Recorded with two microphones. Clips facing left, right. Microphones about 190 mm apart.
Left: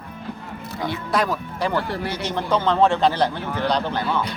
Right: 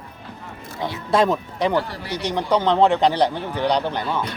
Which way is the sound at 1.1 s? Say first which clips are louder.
Right 6 dB; 25° right (ahead or behind).